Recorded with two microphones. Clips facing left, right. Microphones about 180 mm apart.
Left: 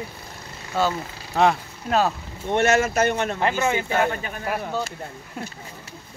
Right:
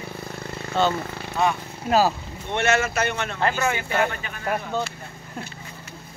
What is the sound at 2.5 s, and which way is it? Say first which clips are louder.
Speech: left 3 dB; 45° left (ahead or behind).